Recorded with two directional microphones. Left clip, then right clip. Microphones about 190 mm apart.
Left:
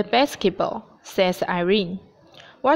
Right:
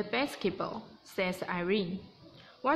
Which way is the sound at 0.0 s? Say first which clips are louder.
Left 12 dB; 45° left (ahead or behind).